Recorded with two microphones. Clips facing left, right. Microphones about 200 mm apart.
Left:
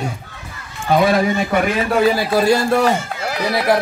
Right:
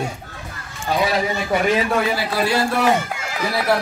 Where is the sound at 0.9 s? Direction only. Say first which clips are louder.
Left 6 dB; 55° left (ahead or behind).